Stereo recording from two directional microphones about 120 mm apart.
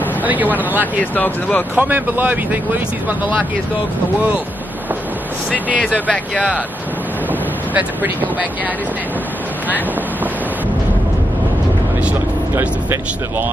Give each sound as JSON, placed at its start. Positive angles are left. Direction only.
{"t": 0.2, "sound": "speech", "side_deg": -15}
{"t": 1.1, "sound": "speech", "side_deg": 15}
{"t": 1.8, "sound": "speech", "side_deg": -15}
{"t": 7.7, "sound": "speech", "side_deg": -15}
{"t": 12.0, "sound": "speech", "side_deg": -15}